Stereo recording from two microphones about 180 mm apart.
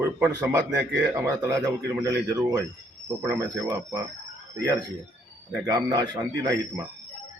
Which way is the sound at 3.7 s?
20° right (ahead or behind).